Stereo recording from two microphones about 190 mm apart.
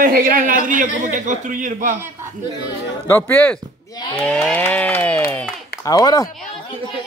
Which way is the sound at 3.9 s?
25° left (ahead or behind).